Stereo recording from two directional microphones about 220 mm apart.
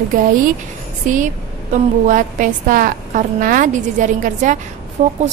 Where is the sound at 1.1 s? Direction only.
35° right (ahead or behind).